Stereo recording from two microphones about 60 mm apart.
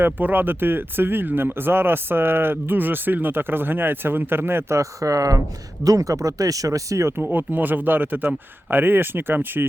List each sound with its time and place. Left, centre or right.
0.0 s speech: right
4.8 s speech: right
7.2 s speech: right